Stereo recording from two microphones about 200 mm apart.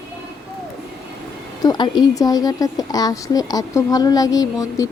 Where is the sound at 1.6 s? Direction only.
20° left (ahead or behind).